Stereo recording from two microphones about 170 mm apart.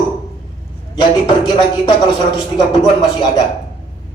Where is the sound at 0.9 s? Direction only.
25° left (ahead or behind).